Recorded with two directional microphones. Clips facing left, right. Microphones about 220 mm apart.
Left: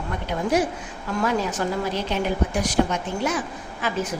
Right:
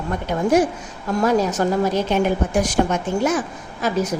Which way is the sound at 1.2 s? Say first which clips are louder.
Right 6 dB; 40° right (ahead or behind).